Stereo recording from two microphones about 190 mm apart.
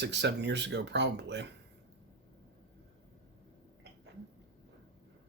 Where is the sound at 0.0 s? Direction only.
65° right (ahead or behind).